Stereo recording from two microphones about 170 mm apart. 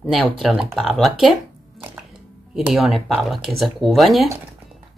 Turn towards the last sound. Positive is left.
turn(degrees=0)  # may be behind; listen again after turning